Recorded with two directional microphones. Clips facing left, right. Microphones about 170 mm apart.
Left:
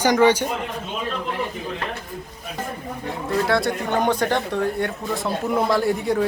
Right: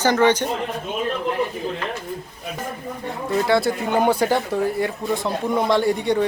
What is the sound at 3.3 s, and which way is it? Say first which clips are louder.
Speech: right 2 dB; centre (ahead or behind).